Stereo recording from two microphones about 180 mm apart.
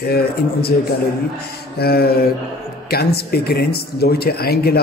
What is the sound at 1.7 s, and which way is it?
A man's voice, 60° left (ahead or behind).